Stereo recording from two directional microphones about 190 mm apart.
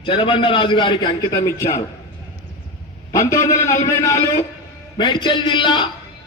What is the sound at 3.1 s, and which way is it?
A man's voice, 15° left (ahead or behind).